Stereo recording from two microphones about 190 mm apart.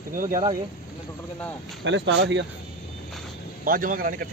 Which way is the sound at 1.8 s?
70° right (ahead or behind).